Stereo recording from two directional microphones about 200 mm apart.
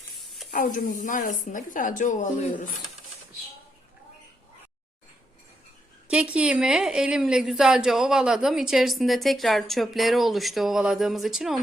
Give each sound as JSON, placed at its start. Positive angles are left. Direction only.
{"t": 0.5, "sound": "a woman's voice", "side_deg": 40}
{"t": 6.1, "sound": "a woman's voice", "side_deg": -5}